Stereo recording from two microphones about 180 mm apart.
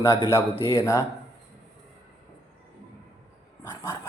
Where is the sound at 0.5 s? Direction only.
30° left (ahead or behind).